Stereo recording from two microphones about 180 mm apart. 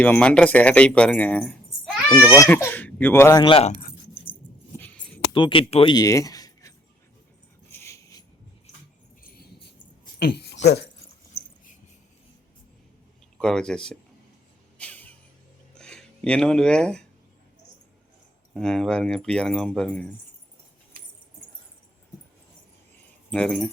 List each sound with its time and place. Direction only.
0.0 s speech: 5° left (ahead or behind)
3.4 s speech: 30° left (ahead or behind)
4.8 s a sound: 5° left (ahead or behind)
5.3 s speech: 30° left (ahead or behind)
7.7 s dog: 15° left (ahead or behind)
9.2 s a sound: 55° left (ahead or behind)
10.2 s speech: 60° left (ahead or behind)
13.4 s speech: 5° left (ahead or behind)
14.8 s music: 10° left (ahead or behind)
15.7 s a sound: 5° left (ahead or behind)
18.5 s speech: 5° left (ahead or behind)
23.3 s speech: 5° left (ahead or behind)